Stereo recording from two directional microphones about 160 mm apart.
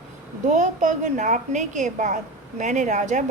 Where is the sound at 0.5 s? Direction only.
50° right (ahead or behind).